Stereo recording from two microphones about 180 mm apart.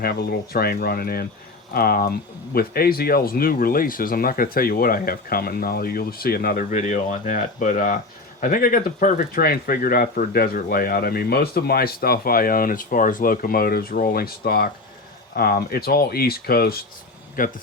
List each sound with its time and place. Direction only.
0.0 s a man's voice: 60° left (ahead or behind)